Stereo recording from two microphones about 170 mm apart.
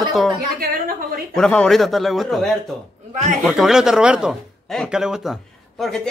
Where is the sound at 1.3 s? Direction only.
5° left (ahead or behind).